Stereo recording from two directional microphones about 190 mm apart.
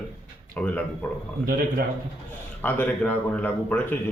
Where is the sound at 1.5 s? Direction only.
50° right (ahead or behind).